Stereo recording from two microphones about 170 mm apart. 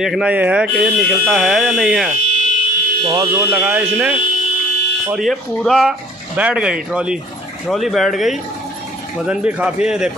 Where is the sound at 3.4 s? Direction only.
10° right (ahead or behind).